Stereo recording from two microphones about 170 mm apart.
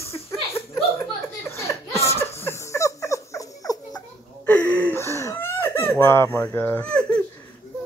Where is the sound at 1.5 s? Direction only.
15° left (ahead or behind).